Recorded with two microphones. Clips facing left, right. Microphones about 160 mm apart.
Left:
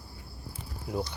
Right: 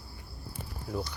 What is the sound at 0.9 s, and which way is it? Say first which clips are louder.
Cricket: left 2 dB; 15° left (ahead or behind).